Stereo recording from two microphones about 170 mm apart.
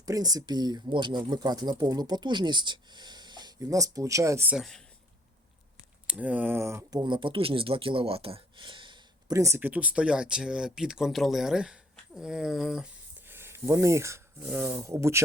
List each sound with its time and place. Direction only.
0.0 s speech: 20° right (ahead or behind)
4.5 s speech: centre (ahead or behind)
6.1 s speech: 10° right (ahead or behind)